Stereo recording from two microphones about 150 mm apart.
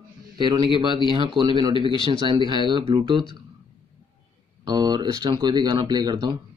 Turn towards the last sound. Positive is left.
turn(degrees=-30)  # may be behind; listen again after turning